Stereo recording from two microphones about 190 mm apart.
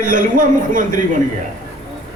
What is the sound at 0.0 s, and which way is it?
A man's voice, 45° right (ahead or behind).